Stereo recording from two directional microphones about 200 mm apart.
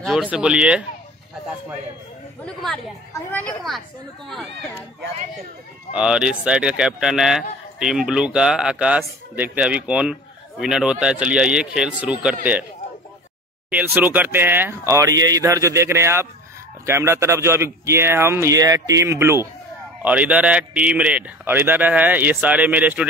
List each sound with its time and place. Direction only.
0.0 s a man's voice: centre (ahead or behind)
2.4 s a man's voice: 5° left (ahead or behind)
5.9 s a man's voice: 5° right (ahead or behind)
13.7 s a man's voice: 10° right (ahead or behind)